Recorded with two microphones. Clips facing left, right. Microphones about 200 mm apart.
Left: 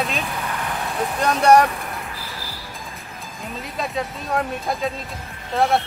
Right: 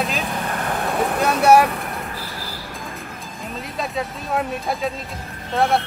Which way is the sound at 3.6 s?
Centre (ahead or behind).